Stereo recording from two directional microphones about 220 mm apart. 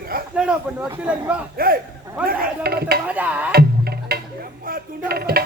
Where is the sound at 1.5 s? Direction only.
40° right (ahead or behind).